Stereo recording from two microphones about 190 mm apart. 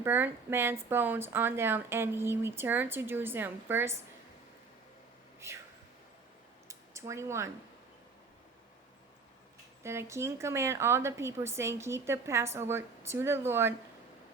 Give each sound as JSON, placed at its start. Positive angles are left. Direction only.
{"t": 0.0, "sound": "a woman's voice", "side_deg": -10}
{"t": 6.7, "sound": "a sound", "side_deg": -15}
{"t": 9.8, "sound": "a woman's voice", "side_deg": -15}